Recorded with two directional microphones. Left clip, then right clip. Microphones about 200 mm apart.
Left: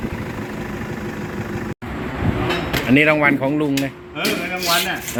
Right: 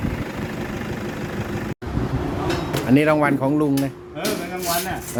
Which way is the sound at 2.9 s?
10° right (ahead or behind).